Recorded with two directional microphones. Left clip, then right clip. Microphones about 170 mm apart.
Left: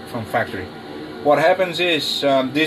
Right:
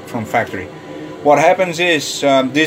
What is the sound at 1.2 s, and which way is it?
Speech, 10° right (ahead or behind).